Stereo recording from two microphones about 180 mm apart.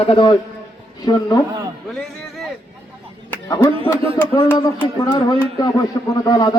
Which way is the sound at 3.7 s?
30° right (ahead or behind).